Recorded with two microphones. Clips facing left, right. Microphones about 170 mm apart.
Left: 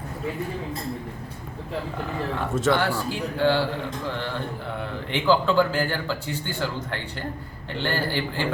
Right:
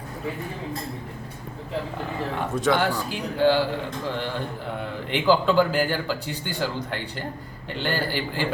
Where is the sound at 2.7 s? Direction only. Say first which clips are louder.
Right 1 dB; 15° right (ahead or behind).